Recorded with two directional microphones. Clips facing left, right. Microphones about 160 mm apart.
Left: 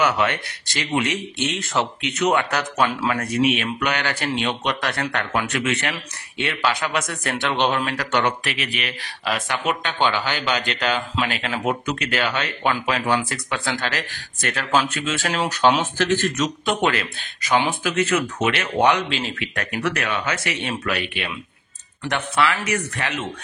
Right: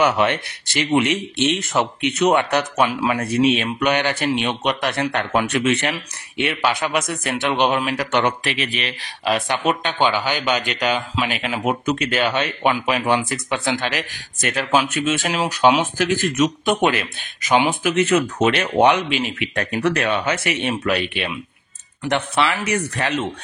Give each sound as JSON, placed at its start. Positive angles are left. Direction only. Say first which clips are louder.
{"t": 0.0, "sound": "speech", "louder": "right 3 dB", "side_deg": -25}
{"t": 17.8, "sound": "speech", "louder": "right 4 dB", "side_deg": -30}
{"t": 18.8, "sound": "speech", "louder": "right 3 dB", "side_deg": -20}
{"t": 19.5, "sound": "speech", "louder": "right 5 dB", "side_deg": -30}